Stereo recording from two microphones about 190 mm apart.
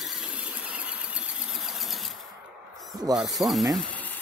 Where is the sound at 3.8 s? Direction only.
10° left (ahead or behind).